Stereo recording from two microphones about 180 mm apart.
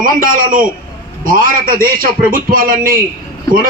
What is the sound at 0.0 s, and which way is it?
A man's voice, 50° right (ahead or behind).